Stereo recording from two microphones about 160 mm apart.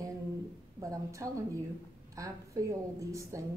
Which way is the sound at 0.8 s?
20° right (ahead or behind).